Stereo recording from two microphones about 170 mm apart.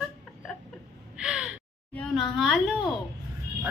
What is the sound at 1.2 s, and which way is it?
Gasp, 5° right (ahead or behind).